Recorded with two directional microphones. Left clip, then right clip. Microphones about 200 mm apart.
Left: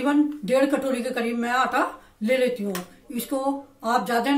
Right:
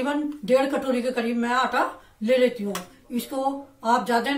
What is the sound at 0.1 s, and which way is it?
A woman's voice, 30° left (ahead or behind).